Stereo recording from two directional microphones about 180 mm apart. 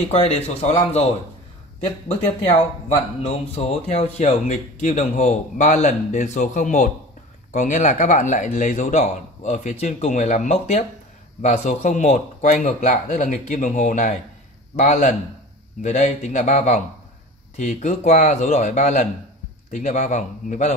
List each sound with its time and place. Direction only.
0.1 s speech: 35° left (ahead or behind)
2.9 s speech: 35° left (ahead or behind)